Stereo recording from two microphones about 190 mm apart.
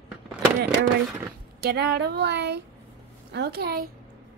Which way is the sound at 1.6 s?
55° right (ahead or behind).